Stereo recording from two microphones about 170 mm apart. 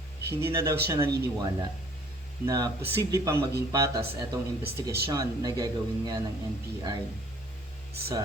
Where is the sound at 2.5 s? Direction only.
25° right (ahead or behind).